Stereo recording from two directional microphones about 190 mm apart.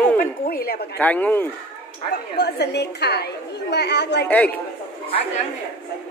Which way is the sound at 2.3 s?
60° left (ahead or behind).